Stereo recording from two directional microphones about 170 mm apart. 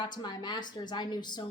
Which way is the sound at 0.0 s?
25° left (ahead or behind).